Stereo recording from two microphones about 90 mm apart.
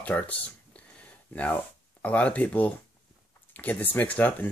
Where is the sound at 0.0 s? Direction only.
15° left (ahead or behind).